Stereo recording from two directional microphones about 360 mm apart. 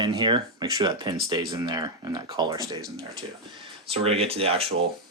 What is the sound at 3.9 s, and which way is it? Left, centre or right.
Speech, centre.